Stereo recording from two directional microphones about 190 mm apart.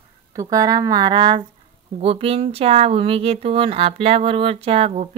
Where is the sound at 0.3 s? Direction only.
20° right (ahead or behind).